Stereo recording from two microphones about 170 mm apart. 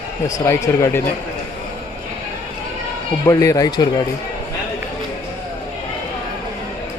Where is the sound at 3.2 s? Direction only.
20° left (ahead or behind).